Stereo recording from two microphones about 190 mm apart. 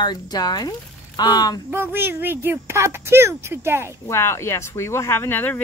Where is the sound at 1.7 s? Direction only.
10° right (ahead or behind).